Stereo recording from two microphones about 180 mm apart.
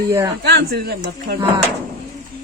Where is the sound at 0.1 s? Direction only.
20° right (ahead or behind).